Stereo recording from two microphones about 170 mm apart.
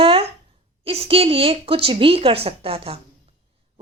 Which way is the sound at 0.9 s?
35° right (ahead or behind).